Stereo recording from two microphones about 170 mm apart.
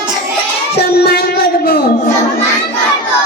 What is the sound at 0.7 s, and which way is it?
Music, 65° left (ahead or behind).